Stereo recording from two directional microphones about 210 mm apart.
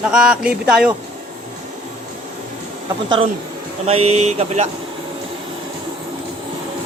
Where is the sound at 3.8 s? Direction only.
30° right (ahead or behind).